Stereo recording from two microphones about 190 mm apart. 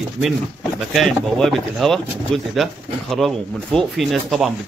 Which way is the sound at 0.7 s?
Centre (ahead or behind).